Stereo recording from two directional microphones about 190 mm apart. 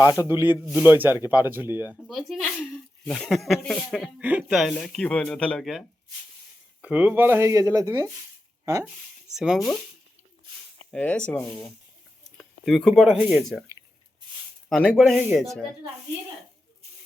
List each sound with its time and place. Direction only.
0.0 s a man's voice: 20° left (ahead or behind)
0.3 s speech: 10° right (ahead or behind)
6.8 s speech: 10° right (ahead or behind)
9.3 s speech: 5° right (ahead or behind)
10.9 s a man's voice: 5° left (ahead or behind)
14.7 s speech: centre (ahead or behind)